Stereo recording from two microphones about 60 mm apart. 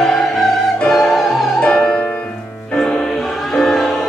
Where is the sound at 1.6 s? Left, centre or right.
Centre.